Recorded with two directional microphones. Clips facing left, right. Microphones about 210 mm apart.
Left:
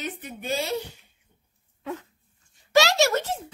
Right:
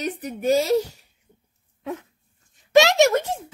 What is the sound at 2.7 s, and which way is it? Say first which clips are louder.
Speech: right 5 dB; 20° right (ahead or behind).